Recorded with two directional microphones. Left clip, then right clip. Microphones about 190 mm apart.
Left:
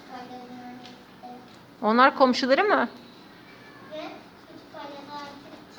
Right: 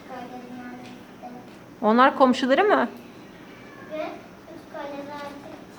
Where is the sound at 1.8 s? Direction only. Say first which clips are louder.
Right 1 dB; 5° left (ahead or behind).